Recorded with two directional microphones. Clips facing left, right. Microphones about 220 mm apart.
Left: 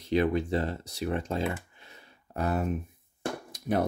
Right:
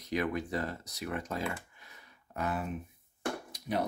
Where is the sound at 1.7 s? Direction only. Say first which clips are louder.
Left 4 dB; 25° left (ahead or behind).